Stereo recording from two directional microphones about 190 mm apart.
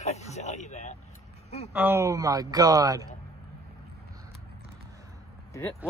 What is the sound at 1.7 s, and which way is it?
Speech, 10° right (ahead or behind).